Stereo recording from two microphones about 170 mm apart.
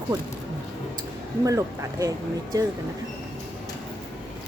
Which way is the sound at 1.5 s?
20° right (ahead or behind).